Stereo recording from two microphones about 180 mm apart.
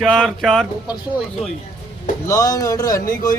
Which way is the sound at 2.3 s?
20° left (ahead or behind).